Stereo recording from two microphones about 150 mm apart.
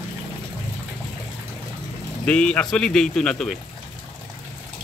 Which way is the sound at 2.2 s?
5° left (ahead or behind).